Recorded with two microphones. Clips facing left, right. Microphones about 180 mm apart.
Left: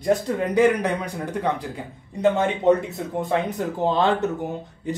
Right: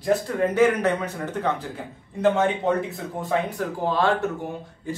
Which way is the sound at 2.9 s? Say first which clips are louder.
Left 3 dB; centre (ahead or behind).